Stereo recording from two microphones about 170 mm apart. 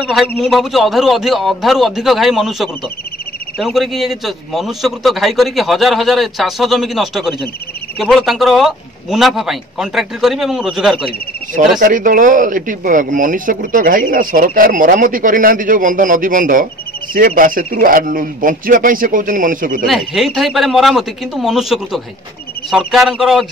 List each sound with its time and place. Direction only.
0.0 s a man's voice: centre (ahead or behind)
11.8 s speech: 55° right (ahead or behind)
19.9 s a man's voice: centre (ahead or behind)